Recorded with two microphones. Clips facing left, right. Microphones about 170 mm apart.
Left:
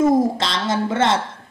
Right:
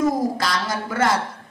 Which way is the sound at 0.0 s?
25° left (ahead or behind).